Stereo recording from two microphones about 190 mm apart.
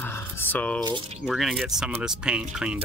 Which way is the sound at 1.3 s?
Centre (ahead or behind).